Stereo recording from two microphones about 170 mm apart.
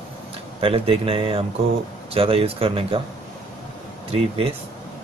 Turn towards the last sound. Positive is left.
turn(degrees=-35)  # may be behind; listen again after turning